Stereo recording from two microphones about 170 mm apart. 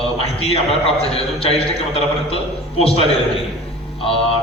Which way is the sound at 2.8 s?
35° left (ahead or behind).